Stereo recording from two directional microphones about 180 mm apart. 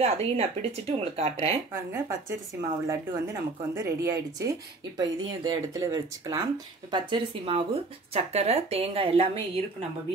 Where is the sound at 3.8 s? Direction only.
20° right (ahead or behind).